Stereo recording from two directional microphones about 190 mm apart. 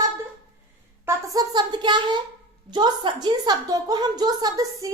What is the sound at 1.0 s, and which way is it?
A woman's voice, 20° right (ahead or behind).